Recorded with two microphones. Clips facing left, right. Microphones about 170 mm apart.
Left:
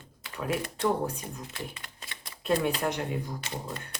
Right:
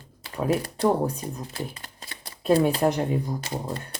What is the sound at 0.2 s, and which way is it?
Speech, 35° right (ahead or behind).